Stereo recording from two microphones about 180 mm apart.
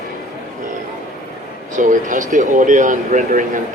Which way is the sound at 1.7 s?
45° right (ahead or behind).